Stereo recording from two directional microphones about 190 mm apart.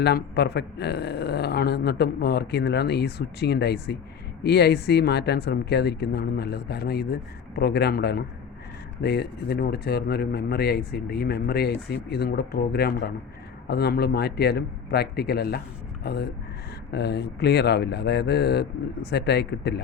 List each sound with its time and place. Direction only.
0.0 s speech: 60° left (ahead or behind)